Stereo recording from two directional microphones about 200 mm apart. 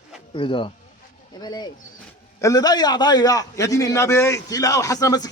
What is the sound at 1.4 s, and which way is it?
Pigeon, 20° left (ahead or behind).